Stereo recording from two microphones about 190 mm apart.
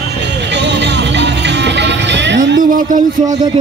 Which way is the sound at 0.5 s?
65° right (ahead or behind).